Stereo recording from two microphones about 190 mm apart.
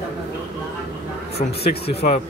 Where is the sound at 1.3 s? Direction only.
55° left (ahead or behind).